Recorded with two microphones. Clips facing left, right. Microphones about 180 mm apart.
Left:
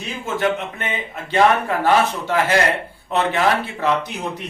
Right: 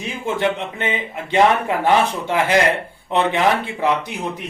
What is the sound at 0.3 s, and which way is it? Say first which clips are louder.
Speech: left 2 dB; 20° right (ahead or behind).